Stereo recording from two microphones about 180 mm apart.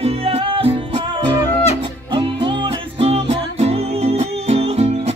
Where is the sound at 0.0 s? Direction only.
35° right (ahead or behind).